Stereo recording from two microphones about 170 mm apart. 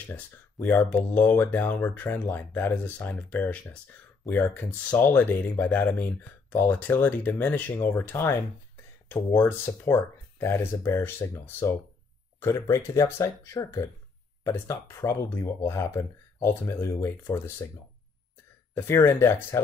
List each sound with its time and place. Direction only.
0.1 s speech: 10° left (ahead or behind)
18.8 s speech: 15° left (ahead or behind)